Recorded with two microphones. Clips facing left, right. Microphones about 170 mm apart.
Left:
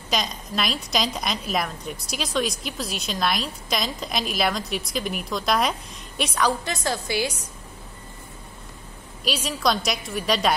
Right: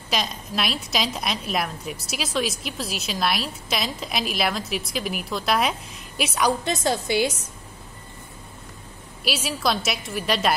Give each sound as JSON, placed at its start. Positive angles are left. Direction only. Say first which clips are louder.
{"t": 0.1, "sound": "a woman's voice", "louder": "even", "side_deg": 0}
{"t": 6.6, "sound": "a woman's voice", "louder": "right 4 dB", "side_deg": -20}
{"t": 9.2, "sound": "a woman's voice", "louder": "left 1 dB", "side_deg": -5}